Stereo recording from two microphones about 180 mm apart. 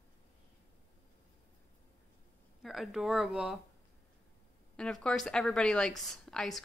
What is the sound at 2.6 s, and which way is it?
Speech, centre (ahead or behind).